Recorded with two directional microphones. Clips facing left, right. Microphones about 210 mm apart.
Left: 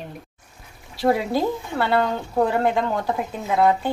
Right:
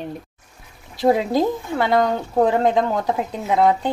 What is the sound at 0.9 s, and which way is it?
A woman's voice, 20° right (ahead or behind).